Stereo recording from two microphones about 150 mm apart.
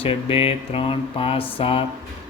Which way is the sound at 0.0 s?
40° left (ahead or behind).